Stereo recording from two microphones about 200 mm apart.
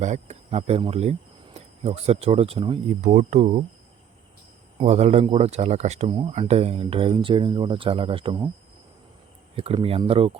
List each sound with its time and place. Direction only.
0.0 s speech: 35° right (ahead or behind)
4.8 s speech: 35° right (ahead or behind)
9.6 s speech: 30° right (ahead or behind)